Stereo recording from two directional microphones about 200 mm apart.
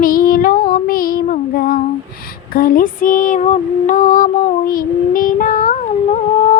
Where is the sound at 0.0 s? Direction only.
45° left (ahead or behind).